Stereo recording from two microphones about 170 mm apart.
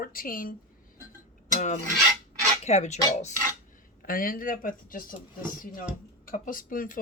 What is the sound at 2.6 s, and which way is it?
Speech, 40° left (ahead or behind).